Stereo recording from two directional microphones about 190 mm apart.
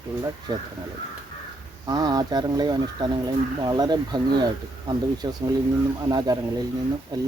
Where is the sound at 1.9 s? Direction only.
20° right (ahead or behind).